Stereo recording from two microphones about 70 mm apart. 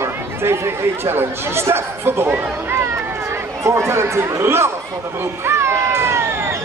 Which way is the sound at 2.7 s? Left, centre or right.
Right.